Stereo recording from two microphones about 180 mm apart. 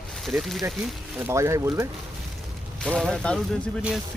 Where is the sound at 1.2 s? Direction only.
15° right (ahead or behind).